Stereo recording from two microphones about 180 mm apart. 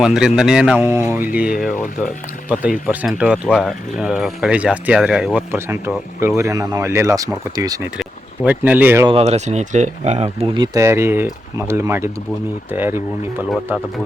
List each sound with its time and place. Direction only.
0.0 s speech: 5° right (ahead or behind)
2.8 s speech: 5° right (ahead or behind)
9.0 s speech: 35° right (ahead or behind)
10.8 s speech: 15° right (ahead or behind)